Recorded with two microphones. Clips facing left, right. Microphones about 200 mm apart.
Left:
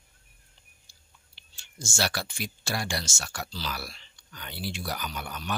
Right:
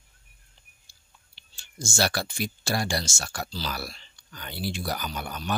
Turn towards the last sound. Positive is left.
turn(degrees=-40)  # may be behind; listen again after turning